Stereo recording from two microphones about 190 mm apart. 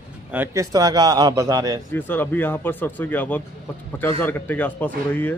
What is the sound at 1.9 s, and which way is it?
Speech, 10° left (ahead or behind).